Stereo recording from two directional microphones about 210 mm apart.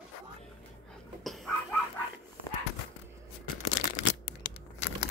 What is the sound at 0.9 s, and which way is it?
Dog, centre (ahead or behind).